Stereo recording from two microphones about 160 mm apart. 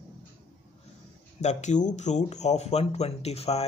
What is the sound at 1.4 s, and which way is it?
Speech, 50° left (ahead or behind).